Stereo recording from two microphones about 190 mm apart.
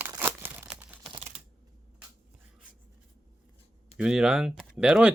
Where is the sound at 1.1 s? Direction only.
30° right (ahead or behind).